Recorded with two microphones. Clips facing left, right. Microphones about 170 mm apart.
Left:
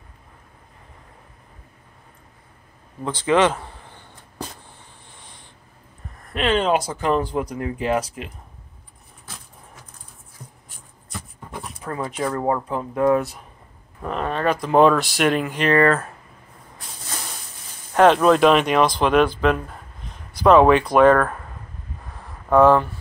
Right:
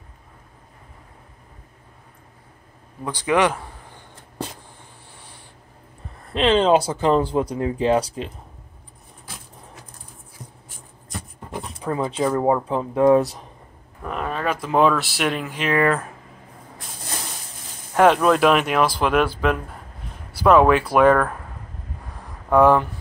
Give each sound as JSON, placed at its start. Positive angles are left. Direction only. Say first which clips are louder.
{"t": 3.1, "sound": "speech", "louder": "left 2 dB", "side_deg": -15}
{"t": 5.1, "sound": "a sound", "louder": "right 1 dB", "side_deg": -10}
{"t": 6.3, "sound": "speech", "louder": "right 3 dB", "side_deg": -25}
{"t": 11.8, "sound": "speech", "louder": "right 4 dB", "side_deg": -20}
{"t": 12.3, "sound": "speech", "louder": "right 3 dB", "side_deg": -10}
{"t": 14.0, "sound": "speech", "louder": "left 3 dB", "side_deg": -5}
{"t": 17.9, "sound": "speech", "louder": "left 1 dB", "side_deg": -5}
{"t": 22.1, "sound": "a sound", "louder": "left 1 dB", "side_deg": -10}